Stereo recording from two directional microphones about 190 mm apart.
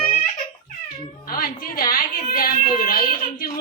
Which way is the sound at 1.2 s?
50° left (ahead or behind).